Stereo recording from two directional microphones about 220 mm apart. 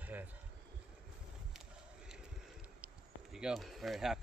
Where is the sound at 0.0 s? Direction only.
10° right (ahead or behind).